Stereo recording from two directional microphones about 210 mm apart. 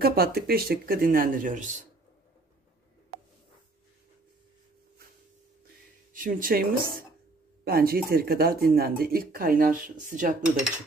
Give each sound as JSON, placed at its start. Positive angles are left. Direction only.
{"t": 0.0, "sound": "speech", "side_deg": -45}
{"t": 6.1, "sound": "speech", "side_deg": -40}